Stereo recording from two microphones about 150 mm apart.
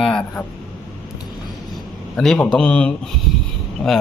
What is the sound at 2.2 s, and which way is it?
A man's voice, 5° left (ahead or behind).